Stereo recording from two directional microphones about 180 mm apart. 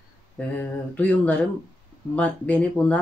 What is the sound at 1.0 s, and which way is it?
Speech, 10° left (ahead or behind).